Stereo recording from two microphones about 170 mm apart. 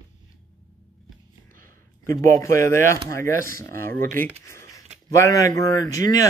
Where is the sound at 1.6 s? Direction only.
15° left (ahead or behind).